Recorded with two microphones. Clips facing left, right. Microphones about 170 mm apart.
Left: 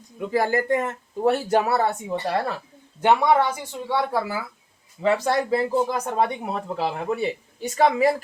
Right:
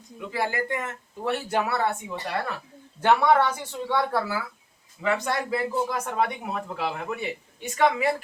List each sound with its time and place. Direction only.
0.3 s speech: 40° left (ahead or behind)
3.0 s speech: 15° left (ahead or behind)
5.0 s speech: 35° left (ahead or behind)